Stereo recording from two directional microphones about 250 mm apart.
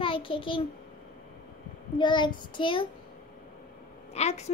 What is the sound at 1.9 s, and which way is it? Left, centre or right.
Speech, centre.